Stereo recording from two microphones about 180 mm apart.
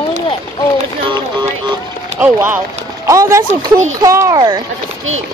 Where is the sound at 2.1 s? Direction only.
10° right (ahead or behind).